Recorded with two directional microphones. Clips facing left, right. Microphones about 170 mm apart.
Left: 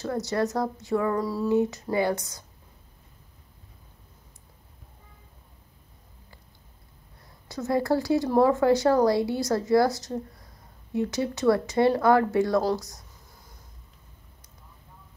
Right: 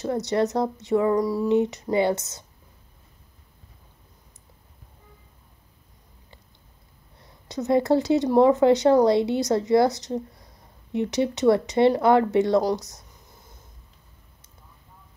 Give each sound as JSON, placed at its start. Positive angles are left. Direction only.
{"t": 0.0, "sound": "speech", "side_deg": -20}
{"t": 7.4, "sound": "speech", "side_deg": -20}